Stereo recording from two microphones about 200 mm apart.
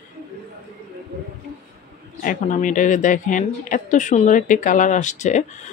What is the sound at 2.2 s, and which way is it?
Speech, 40° left (ahead or behind).